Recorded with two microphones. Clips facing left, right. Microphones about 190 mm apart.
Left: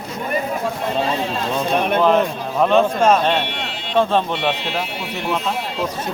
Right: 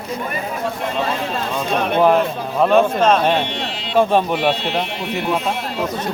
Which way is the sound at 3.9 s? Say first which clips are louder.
Right 2 dB; 10° right (ahead or behind).